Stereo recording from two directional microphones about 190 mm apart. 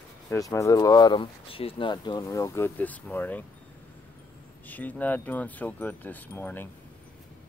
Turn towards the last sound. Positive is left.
turn(degrees=10)  # may be behind; listen again after turning